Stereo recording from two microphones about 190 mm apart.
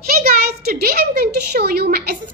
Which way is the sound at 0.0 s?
50° right (ahead or behind).